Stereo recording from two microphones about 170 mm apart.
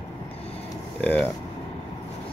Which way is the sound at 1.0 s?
5° left (ahead or behind).